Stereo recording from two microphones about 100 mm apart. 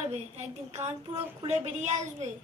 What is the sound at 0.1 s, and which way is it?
A woman's voice, 90° right.